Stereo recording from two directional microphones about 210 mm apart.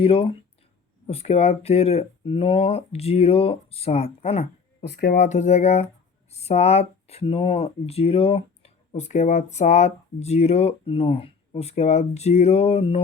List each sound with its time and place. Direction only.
0.0 s speech: 25° left (ahead or behind)
4.8 s speech: 50° left (ahead or behind)
5.1 s speech: 35° left (ahead or behind)